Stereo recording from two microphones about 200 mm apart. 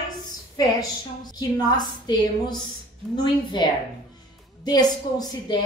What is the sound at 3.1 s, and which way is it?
Speech, centre (ahead or behind).